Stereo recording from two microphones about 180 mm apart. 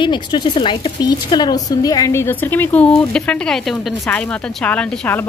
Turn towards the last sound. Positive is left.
turn(degrees=10)  # may be behind; listen again after turning